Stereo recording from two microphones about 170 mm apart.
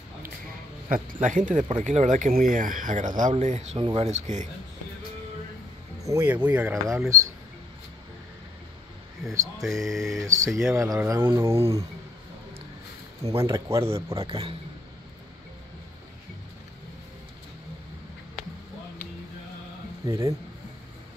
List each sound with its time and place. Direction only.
0.8 s speech: 50° right (ahead or behind)
6.0 s speech: 15° right (ahead or behind)
9.6 s a sound: centre (ahead or behind)
10.2 s speech: 20° right (ahead or behind)
13.4 s speech: 15° right (ahead or behind)
14.1 s speech: 30° right (ahead or behind)
20.1 s speech: 15° right (ahead or behind)